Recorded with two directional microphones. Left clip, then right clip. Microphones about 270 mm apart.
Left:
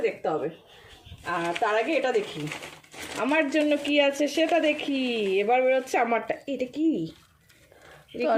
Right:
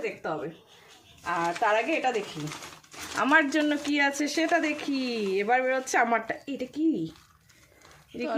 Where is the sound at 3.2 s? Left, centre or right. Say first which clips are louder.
Right 1 dB; right.